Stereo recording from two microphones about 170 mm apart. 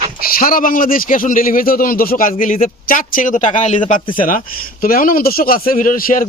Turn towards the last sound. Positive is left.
turn(degrees=55)  # may be behind; listen again after turning